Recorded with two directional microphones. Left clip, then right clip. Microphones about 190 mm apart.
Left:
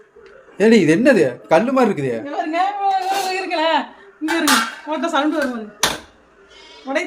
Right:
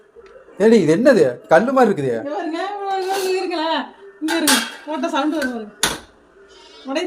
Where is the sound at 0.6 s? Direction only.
15° left (ahead or behind).